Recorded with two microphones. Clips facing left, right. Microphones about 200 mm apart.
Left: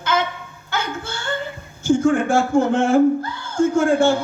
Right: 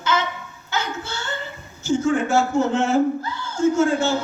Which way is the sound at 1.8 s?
55° left (ahead or behind).